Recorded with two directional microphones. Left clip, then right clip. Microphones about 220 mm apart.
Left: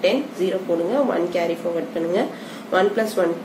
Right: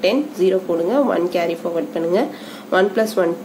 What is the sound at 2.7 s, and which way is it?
Speech, 25° right (ahead or behind).